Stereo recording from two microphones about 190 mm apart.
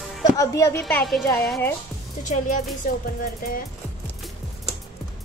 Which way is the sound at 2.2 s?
40° left (ahead or behind).